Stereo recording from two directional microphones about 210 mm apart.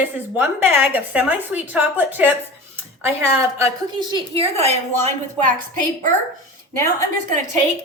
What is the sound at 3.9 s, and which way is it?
A woman's voice, 20° right (ahead or behind).